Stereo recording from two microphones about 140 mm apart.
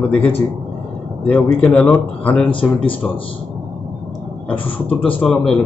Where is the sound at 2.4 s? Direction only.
35° left (ahead or behind).